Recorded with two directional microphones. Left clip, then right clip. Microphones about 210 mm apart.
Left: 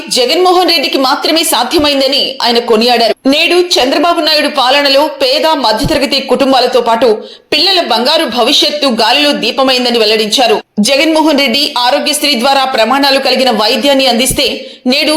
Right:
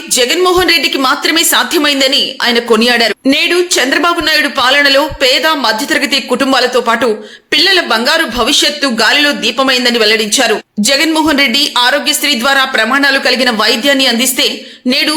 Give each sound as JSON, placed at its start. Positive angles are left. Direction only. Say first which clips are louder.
{"t": 0.2, "sound": "a woman's voice", "louder": "left 2 dB", "side_deg": -5}